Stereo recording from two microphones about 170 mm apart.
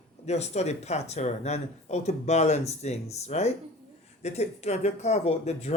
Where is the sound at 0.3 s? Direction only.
40° left (ahead or behind).